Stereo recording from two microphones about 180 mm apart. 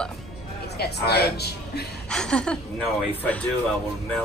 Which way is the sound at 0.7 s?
65° left (ahead or behind).